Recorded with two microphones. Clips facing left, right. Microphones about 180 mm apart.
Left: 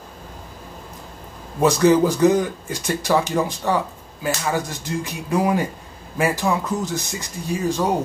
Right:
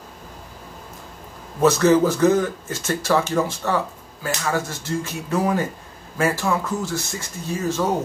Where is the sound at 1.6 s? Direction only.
15° left (ahead or behind).